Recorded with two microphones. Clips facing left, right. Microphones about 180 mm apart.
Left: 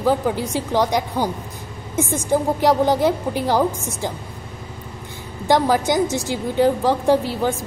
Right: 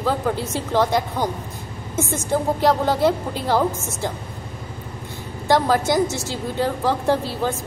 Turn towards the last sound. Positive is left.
turn(degrees=15)  # may be behind; listen again after turning